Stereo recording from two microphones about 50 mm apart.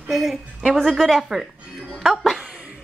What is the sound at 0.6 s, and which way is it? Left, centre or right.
A woman's voice, centre.